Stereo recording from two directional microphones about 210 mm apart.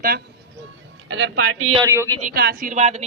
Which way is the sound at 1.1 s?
60° right (ahead or behind).